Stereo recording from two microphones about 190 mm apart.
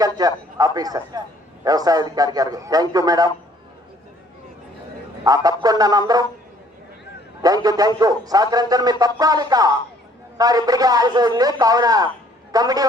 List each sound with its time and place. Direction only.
0.0 s speech: 20° right (ahead or behind)
5.2 s speech: 20° right (ahead or behind)
7.4 s a man's voice: 20° right (ahead or behind)